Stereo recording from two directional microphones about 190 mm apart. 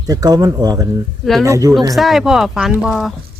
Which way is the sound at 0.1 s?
20° right (ahead or behind).